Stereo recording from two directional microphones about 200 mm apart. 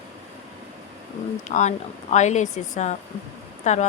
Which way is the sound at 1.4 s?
35° left (ahead or behind).